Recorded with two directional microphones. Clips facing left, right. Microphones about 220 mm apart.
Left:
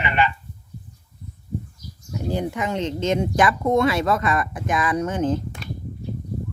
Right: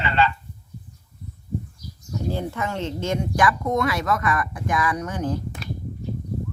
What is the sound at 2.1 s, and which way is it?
Speech, 15° left (ahead or behind).